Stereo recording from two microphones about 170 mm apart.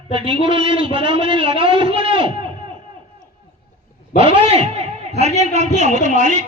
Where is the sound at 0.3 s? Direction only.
30° right (ahead or behind).